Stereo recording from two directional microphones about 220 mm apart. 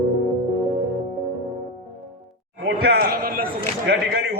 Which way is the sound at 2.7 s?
45° right (ahead or behind).